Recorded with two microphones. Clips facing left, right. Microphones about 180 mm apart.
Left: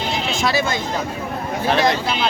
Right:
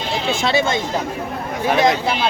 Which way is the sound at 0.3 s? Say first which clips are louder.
Right 3 dB; 25° right (ahead or behind).